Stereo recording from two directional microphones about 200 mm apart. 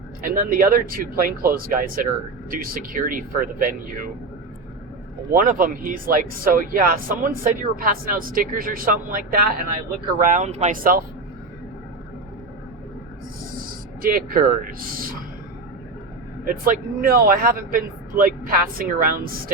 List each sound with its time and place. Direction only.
0.2 s speech: 45° right (ahead or behind)
5.3 s speech: 45° right (ahead or behind)
14.0 s speech: 45° right (ahead or behind)
16.4 s speech: 45° right (ahead or behind)